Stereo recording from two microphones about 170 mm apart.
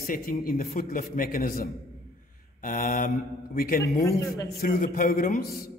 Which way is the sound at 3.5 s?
60° left (ahead or behind).